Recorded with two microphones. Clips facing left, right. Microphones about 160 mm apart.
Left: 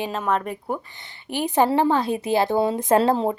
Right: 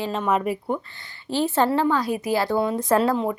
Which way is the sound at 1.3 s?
15° left (ahead or behind).